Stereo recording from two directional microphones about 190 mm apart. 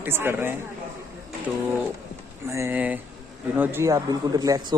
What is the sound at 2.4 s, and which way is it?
A man's voice, 15° right (ahead or behind).